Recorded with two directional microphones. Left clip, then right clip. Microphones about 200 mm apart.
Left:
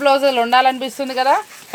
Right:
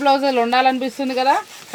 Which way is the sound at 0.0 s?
55° left (ahead or behind).